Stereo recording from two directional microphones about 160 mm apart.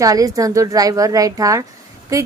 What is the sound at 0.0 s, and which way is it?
Speech, 20° right (ahead or behind).